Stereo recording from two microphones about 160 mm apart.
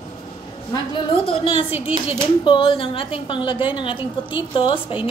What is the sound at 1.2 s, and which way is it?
Speech, 35° left (ahead or behind).